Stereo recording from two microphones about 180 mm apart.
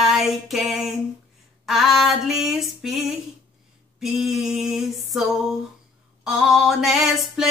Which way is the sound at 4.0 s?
Centre (ahead or behind).